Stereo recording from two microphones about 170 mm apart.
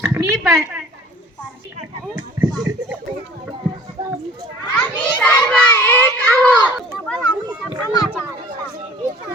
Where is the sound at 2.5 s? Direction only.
25° right (ahead or behind).